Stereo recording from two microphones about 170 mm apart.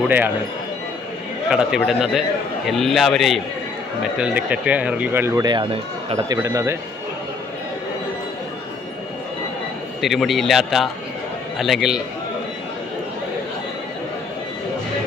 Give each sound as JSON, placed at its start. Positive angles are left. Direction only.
{"t": 1.5, "sound": "a man's voice", "side_deg": -5}
{"t": 10.0, "sound": "a man's voice", "side_deg": 0}